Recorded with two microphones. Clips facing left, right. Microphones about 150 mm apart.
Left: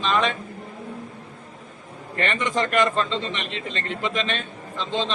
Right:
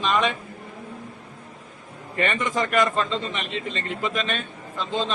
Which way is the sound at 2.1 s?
10° right (ahead or behind).